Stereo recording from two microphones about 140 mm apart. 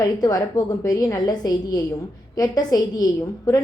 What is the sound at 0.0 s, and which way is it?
A woman's voice, 25° left (ahead or behind).